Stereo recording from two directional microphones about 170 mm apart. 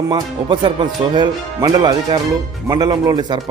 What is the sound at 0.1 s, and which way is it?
Speech, 30° right (ahead or behind).